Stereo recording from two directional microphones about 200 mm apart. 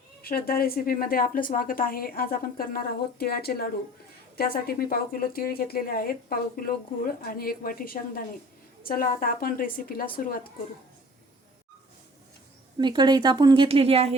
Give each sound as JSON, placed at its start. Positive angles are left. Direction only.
{"t": 0.2, "sound": "a woman's voice", "side_deg": 45}
{"t": 12.8, "sound": "speech", "side_deg": -20}